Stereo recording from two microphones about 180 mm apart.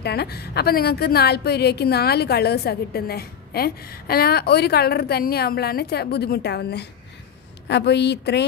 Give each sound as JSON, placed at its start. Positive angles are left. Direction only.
{"t": 0.0, "sound": "a woman's voice", "side_deg": 65}